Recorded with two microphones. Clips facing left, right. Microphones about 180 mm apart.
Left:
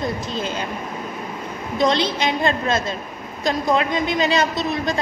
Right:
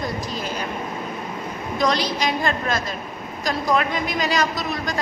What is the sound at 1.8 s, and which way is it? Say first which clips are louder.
A woman's voice: left 3 dB; 25° left (ahead or behind).